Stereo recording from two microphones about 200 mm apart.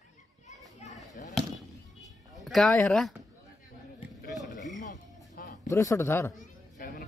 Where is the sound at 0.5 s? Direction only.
35° left (ahead or behind).